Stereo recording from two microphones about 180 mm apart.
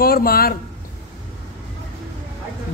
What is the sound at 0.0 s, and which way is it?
Speech, 55° left (ahead or behind).